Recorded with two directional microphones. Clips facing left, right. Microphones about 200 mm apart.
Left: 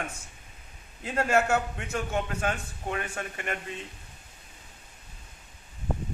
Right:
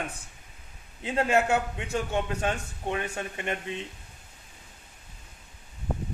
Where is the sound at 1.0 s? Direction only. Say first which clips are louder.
Right 1 dB; 15° right (ahead or behind).